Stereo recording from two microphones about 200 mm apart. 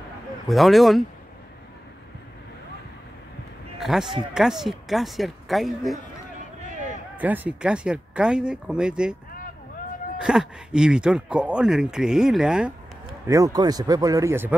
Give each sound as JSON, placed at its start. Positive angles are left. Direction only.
{"t": 0.5, "sound": "speech", "side_deg": 0}
{"t": 3.8, "sound": "speech", "side_deg": 0}
{"t": 7.2, "sound": "speech", "side_deg": -10}
{"t": 10.1, "sound": "speech", "side_deg": -5}
{"t": 13.3, "sound": "speech", "side_deg": -20}